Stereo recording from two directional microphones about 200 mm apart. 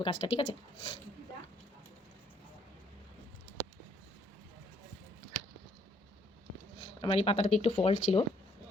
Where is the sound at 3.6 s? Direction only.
20° right (ahead or behind).